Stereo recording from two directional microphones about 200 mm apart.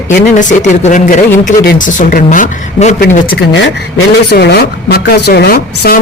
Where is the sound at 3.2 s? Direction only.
60° left (ahead or behind).